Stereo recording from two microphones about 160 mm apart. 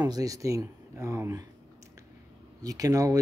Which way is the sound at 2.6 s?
20° right (ahead or behind).